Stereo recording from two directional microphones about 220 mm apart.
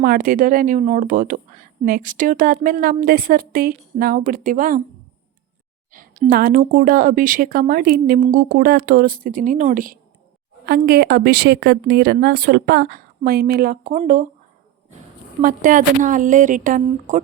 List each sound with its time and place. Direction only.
0.0 s speech: 40° right (ahead or behind)
5.9 s a woman's voice: 40° right (ahead or behind)
15.4 s speech: 35° right (ahead or behind)